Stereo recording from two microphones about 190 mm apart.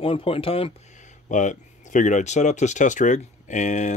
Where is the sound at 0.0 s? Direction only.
30° left (ahead or behind).